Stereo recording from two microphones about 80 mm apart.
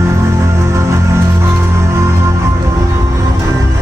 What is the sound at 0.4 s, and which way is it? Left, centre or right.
Music, right.